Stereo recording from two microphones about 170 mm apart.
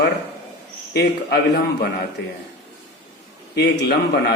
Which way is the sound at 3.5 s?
75° left (ahead or behind).